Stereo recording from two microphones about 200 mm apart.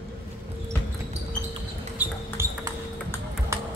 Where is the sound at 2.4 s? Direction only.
15° right (ahead or behind).